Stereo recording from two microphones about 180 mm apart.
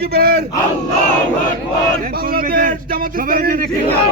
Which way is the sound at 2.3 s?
55° right (ahead or behind).